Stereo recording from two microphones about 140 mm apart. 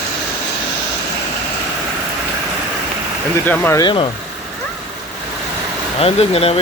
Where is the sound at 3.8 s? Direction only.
40° left (ahead or behind).